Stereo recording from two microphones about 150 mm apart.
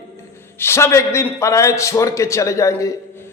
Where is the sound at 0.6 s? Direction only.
15° left (ahead or behind).